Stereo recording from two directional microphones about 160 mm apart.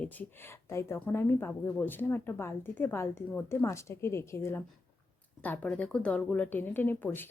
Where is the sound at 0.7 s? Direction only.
15° left (ahead or behind).